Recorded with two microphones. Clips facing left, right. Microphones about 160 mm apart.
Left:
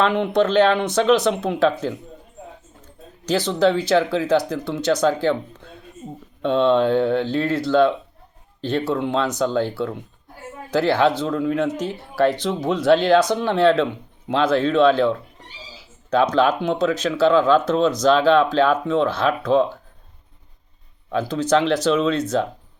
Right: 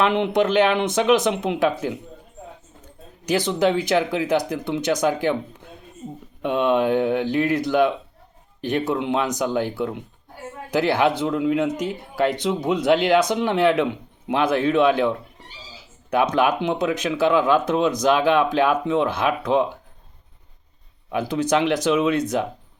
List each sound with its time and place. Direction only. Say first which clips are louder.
0.0 s speech: left 1 dB; 20° right (ahead or behind)
3.2 s speech: left 2 dB; 15° right (ahead or behind)
16.3 s speech: left 2 dB; 15° right (ahead or behind)
21.1 s speech: left 2 dB; 15° right (ahead or behind)